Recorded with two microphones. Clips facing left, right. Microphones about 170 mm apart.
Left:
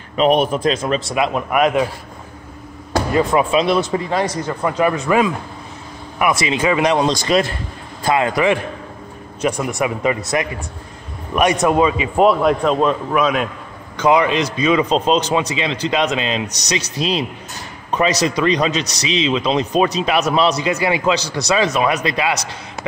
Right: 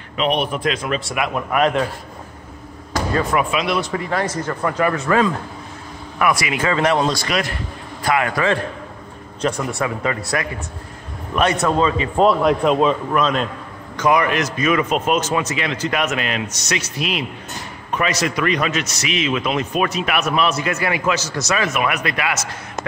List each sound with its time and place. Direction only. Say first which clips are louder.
0.2 s a man's voice: left 5 dB; 40° left (ahead or behind)
1.1 s a man's voice: left 4 dB; 25° left (ahead or behind)
1.5 s speech: left 1 dB; 10° left (ahead or behind)
3.1 s speech: left 3 dB; 20° left (ahead or behind)
3.5 s a man's voice: left 5 dB; 30° left (ahead or behind); by 12.3 s 15° left (ahead or behind)
12.3 s a man's voice: even; centre (ahead or behind); by 14.9 s 15° left (ahead or behind)
14.9 s a man's voice: left 3 dB; 30° left (ahead or behind)
18.3 s a man's voice: left 3 dB; 25° left (ahead or behind)
20.2 s a man's voice: left 3 dB; 35° left (ahead or behind)
20.6 s a man's voice: left 3 dB; 20° left (ahead or behind)
21.0 s a man's voice: left 3 dB; 30° left (ahead or behind)